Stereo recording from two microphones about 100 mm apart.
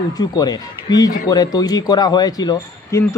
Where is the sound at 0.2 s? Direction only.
45° left (ahead or behind).